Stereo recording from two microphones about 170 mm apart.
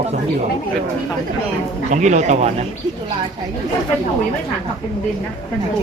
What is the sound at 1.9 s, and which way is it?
Speech, 45° right (ahead or behind).